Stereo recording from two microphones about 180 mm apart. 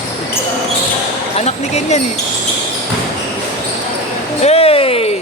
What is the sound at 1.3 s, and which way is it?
Speech, 40° left (ahead or behind).